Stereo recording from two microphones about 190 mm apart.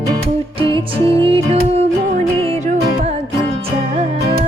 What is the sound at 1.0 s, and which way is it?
Music, 30° right (ahead or behind).